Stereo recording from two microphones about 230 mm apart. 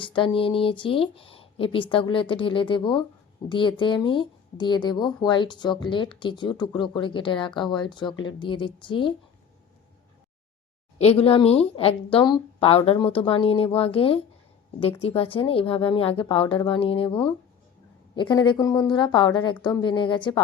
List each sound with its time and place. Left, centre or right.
0.0 s speech: left
10.9 s speech: left
18.2 s speech: centre